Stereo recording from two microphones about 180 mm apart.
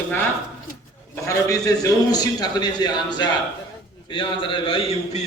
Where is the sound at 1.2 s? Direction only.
20° left (ahead or behind).